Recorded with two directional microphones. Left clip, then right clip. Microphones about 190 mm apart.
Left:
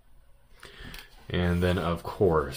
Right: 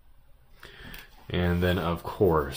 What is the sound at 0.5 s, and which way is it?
Speech, 5° left (ahead or behind).